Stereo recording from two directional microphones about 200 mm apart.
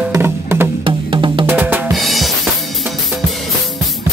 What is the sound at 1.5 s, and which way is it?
Drum, 10° right (ahead or behind).